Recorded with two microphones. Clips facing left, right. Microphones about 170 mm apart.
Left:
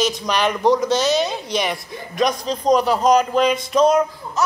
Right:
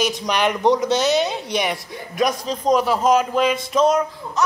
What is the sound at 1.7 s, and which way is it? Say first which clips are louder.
A man's voice: even; 5° right (ahead or behind).